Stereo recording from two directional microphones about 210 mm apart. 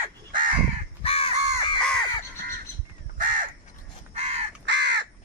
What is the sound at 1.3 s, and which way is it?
Crow, 35° right (ahead or behind).